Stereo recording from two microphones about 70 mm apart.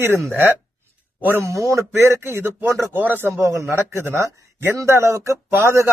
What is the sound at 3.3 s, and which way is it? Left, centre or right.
Speech, right.